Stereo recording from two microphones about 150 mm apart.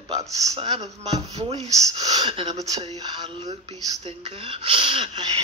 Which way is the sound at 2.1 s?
35° right (ahead or behind).